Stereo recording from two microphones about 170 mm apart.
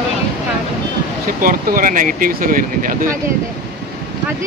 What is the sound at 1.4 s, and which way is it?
Speech, 55° right (ahead or behind).